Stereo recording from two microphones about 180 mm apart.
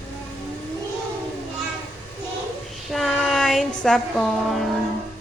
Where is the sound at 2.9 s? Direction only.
Centre (ahead or behind).